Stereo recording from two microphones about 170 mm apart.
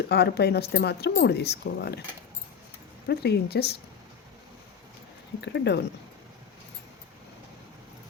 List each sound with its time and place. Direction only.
0.1 s speech: 70° left (ahead or behind)
3.1 s speech: 70° left (ahead or behind)
5.5 s speech: 85° left